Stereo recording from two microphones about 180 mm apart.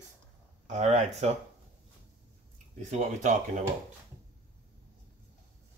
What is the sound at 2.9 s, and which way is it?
Speech, 45° right (ahead or behind).